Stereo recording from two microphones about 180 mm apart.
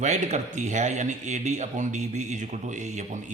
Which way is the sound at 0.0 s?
40° right (ahead or behind).